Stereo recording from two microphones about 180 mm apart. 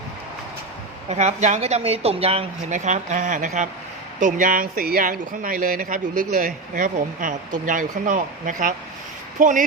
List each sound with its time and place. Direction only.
1.1 s speech: 40° right (ahead or behind)